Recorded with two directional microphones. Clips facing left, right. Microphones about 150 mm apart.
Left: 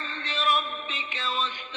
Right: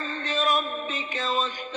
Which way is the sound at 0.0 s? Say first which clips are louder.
Right 3 dB; 40° right (ahead or behind).